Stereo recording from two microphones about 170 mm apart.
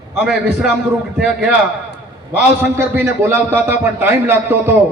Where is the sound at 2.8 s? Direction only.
15° right (ahead or behind).